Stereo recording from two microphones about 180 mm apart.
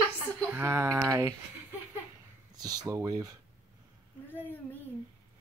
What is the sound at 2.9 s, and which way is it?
Speech, 20° right (ahead or behind).